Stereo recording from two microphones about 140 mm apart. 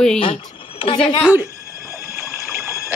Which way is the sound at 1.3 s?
20° right (ahead or behind).